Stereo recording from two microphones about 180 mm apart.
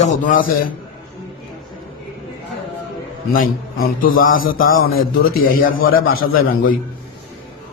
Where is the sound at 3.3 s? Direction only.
50° left (ahead or behind).